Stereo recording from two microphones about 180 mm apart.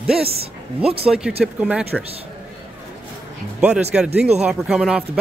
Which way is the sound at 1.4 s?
5° right (ahead or behind).